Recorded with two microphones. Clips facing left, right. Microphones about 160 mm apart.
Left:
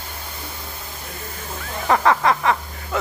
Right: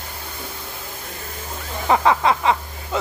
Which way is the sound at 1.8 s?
15° right (ahead or behind).